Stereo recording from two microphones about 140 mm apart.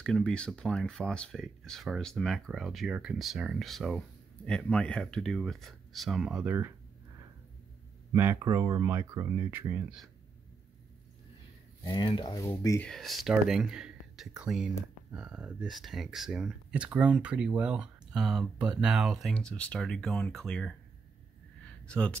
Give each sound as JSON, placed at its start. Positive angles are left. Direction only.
{"t": 0.0, "sound": "speech", "side_deg": 5}
{"t": 8.1, "sound": "speech", "side_deg": -20}
{"t": 11.8, "sound": "speech", "side_deg": 30}
{"t": 12.4, "sound": "speech", "side_deg": 15}
{"t": 12.8, "sound": "speech", "side_deg": 0}
{"t": 21.8, "sound": "speech", "side_deg": 5}